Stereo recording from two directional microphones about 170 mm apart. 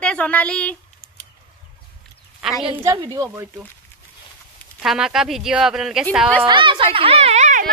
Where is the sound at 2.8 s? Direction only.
20° right (ahead or behind).